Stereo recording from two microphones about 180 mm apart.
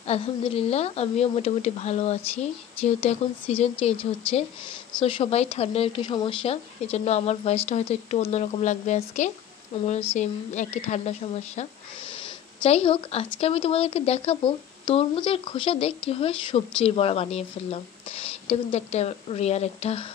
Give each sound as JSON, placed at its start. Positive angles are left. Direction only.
{"t": 0.0, "sound": "speech", "side_deg": 35}